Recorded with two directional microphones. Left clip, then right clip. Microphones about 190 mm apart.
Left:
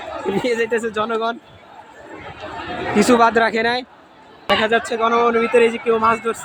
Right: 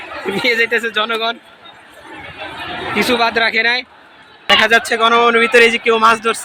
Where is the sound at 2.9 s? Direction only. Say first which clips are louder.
Left 1 dB; 45° left (ahead or behind).